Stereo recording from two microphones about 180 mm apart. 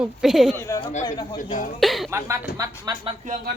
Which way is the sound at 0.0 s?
Centre (ahead or behind).